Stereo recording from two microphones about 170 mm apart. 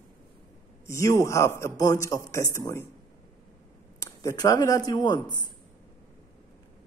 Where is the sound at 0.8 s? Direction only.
20° left (ahead or behind).